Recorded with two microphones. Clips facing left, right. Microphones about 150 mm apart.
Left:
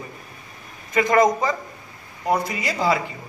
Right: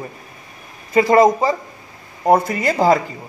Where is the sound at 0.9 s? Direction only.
30° right (ahead or behind).